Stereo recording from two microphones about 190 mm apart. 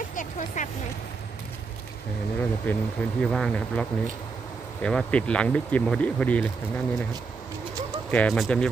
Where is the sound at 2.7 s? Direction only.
10° left (ahead or behind).